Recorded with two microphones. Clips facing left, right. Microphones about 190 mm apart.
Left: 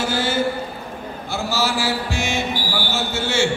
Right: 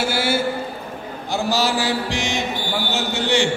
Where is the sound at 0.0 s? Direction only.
10° right (ahead or behind).